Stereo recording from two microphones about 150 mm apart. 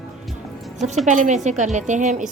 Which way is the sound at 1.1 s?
55° right (ahead or behind).